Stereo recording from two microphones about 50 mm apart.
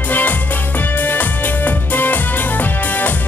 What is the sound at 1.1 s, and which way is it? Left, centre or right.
Music, left.